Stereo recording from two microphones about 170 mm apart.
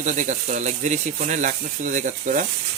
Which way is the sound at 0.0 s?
45° right (ahead or behind).